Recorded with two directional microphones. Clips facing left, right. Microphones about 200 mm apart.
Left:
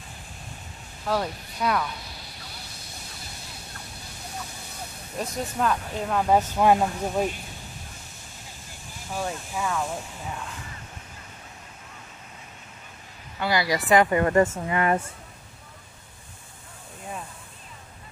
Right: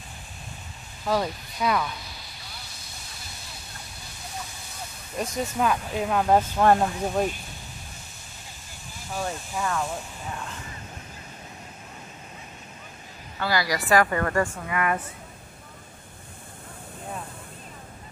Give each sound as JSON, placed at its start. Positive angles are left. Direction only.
{"t": 1.0, "sound": "speech", "side_deg": 0}
{"t": 5.1, "sound": "speech", "side_deg": 0}
{"t": 9.1, "sound": "speech", "side_deg": 5}
{"t": 13.4, "sound": "speech", "side_deg": 20}